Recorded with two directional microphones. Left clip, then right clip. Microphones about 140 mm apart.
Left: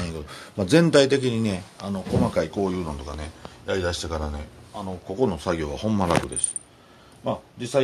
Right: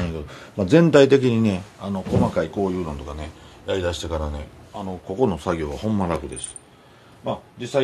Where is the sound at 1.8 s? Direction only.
10° left (ahead or behind).